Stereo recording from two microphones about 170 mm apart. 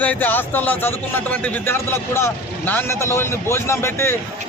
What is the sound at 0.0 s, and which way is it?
Speech, 10° left (ahead or behind).